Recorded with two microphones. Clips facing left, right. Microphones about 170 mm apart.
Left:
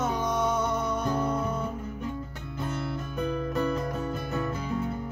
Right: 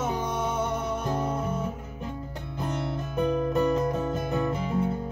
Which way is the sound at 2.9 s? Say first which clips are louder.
Right 4 dB; 25° right (ahead or behind).